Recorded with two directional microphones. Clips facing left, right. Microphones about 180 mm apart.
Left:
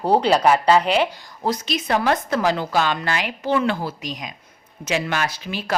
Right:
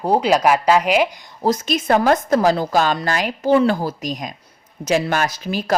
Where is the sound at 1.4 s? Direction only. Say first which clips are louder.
Right 5 dB; 45° right (ahead or behind).